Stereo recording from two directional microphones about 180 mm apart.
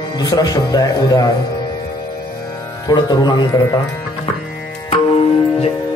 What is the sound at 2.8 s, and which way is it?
Speech, 25° left (ahead or behind).